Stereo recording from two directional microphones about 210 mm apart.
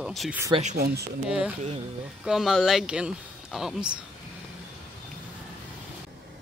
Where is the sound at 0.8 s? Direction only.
50° right (ahead or behind).